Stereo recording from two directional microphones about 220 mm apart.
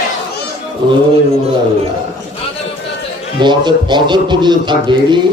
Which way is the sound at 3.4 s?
20° right (ahead or behind).